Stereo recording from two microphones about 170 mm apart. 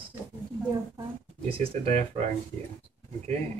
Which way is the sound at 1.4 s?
35° right (ahead or behind).